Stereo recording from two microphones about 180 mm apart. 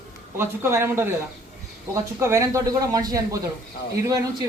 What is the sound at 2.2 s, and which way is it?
Speech, 15° right (ahead or behind).